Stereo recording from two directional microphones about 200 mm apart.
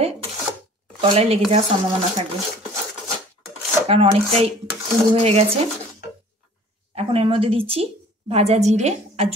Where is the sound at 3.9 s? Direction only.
30° right (ahead or behind).